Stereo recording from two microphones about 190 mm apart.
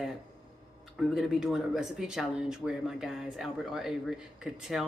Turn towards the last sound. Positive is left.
turn(degrees=0)  # may be behind; listen again after turning